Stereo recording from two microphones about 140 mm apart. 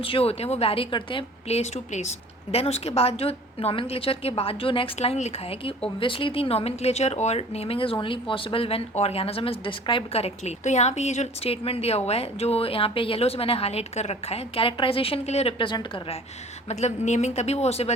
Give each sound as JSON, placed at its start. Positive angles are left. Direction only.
{"t": 0.0, "sound": "speech", "side_deg": 40}
{"t": 16.6, "sound": "speech", "side_deg": 50}